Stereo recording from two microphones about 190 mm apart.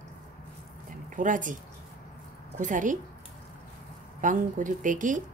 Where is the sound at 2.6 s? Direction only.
40° right (ahead or behind).